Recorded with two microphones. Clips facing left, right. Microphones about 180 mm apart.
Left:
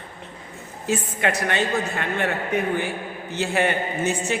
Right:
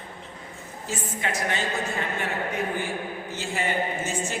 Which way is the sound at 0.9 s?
65° left (ahead or behind).